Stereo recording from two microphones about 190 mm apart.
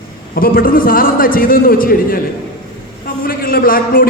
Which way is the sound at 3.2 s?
50° left (ahead or behind).